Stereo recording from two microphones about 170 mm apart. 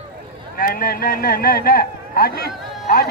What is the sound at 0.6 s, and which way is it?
Speech, 60° left (ahead or behind).